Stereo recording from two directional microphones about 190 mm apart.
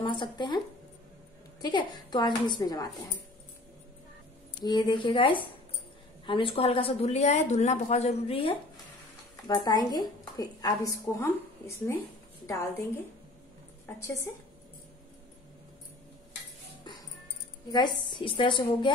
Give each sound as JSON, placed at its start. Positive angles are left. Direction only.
{"t": 0.0, "sound": "speech", "side_deg": 25}
{"t": 1.6, "sound": "a woman's voice", "side_deg": 25}
{"t": 4.6, "sound": "a woman's voice", "side_deg": 25}
{"t": 13.8, "sound": "a woman's voice", "side_deg": 15}
{"t": 17.6, "sound": "a woman's voice", "side_deg": 25}